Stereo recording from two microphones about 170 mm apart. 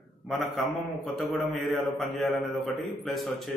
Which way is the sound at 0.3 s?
Centre (ahead or behind).